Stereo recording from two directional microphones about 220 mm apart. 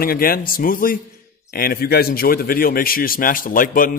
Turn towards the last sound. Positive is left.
turn(degrees=40)  # may be behind; listen again after turning